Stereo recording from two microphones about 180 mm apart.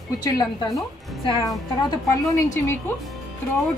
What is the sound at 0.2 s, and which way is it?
Speech, 20° left (ahead or behind).